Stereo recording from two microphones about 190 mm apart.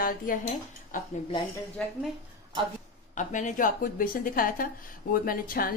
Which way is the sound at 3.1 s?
40° left (ahead or behind).